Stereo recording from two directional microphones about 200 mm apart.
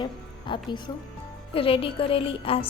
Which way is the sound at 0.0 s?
25° left (ahead or behind).